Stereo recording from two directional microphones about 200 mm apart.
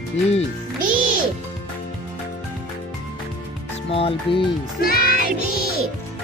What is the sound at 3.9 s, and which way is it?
Speech, 30° left (ahead or behind).